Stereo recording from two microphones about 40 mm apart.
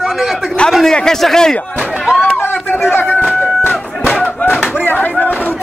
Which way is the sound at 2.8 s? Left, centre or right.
Left.